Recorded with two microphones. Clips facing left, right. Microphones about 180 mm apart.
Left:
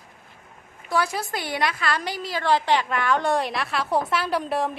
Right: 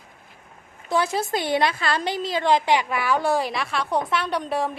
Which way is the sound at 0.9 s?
25° right (ahead or behind).